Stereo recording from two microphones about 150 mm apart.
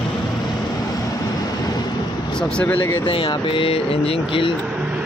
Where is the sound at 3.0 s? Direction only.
35° left (ahead or behind).